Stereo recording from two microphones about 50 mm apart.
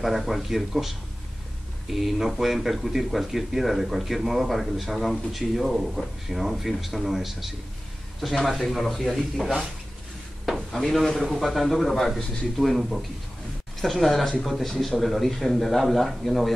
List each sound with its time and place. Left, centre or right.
0.0 s speech: centre